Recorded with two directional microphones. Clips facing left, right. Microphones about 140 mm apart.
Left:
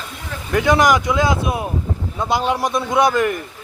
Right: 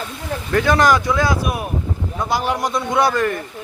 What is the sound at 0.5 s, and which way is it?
Speech, 20° left (ahead or behind).